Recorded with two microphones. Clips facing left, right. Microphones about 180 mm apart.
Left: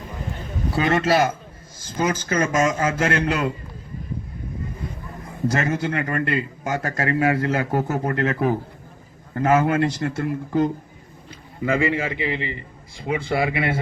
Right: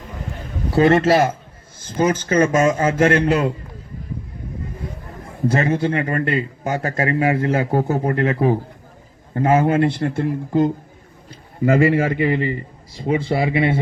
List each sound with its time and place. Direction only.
0.8 s a man's voice: 30° right (ahead or behind)
5.5 s a man's voice: 30° right (ahead or behind)
11.6 s a man's voice: 45° right (ahead or behind); by 13.7 s 25° right (ahead or behind)